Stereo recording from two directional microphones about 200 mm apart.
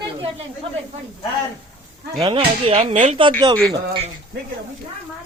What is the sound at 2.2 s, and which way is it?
Speech, 25° right (ahead or behind).